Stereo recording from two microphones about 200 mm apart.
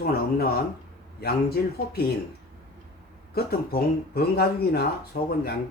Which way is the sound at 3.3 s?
50° left (ahead or behind).